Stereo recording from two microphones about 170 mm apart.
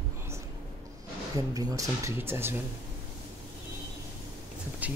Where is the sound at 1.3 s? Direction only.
20° right (ahead or behind).